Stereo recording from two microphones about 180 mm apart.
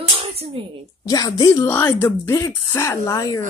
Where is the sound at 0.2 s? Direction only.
35° right (ahead or behind).